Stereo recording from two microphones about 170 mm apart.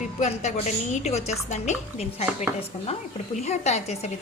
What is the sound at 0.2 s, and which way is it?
A woman's voice, 40° left (ahead or behind).